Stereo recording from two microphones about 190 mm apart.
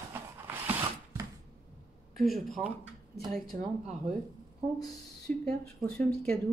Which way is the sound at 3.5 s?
35° right (ahead or behind).